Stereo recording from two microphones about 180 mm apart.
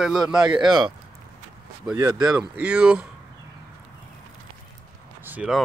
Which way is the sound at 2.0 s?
20° right (ahead or behind).